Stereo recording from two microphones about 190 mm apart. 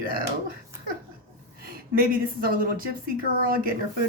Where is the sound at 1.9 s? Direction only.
50° right (ahead or behind).